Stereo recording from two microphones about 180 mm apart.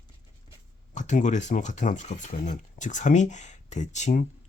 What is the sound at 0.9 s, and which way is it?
Speech, 40° left (ahead or behind).